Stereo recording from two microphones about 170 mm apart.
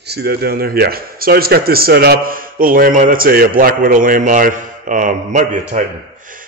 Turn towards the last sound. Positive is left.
turn(degrees=-45)  # may be behind; listen again after turning